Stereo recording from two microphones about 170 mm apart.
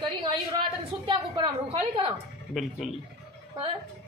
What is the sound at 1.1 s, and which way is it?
Speech, 30° right (ahead or behind).